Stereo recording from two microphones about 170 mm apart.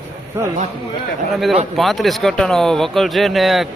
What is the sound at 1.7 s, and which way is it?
Speech, centre (ahead or behind).